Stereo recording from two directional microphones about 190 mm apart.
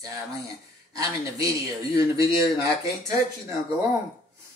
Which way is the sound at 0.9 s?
20° right (ahead or behind).